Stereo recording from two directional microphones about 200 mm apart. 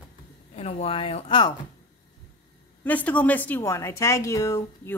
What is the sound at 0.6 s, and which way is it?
Speech, 30° left (ahead or behind).